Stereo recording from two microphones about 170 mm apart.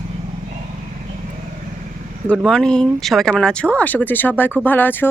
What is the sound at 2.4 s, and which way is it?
Speech, 5° left (ahead or behind).